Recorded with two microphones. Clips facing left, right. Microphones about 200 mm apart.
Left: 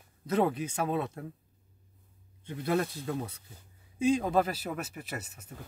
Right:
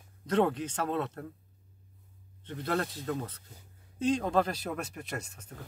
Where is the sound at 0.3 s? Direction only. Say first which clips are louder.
Right 1 dB; 10° left (ahead or behind).